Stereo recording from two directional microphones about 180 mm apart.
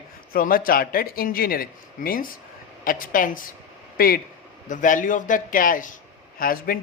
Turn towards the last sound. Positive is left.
turn(degrees=55)  # may be behind; listen again after turning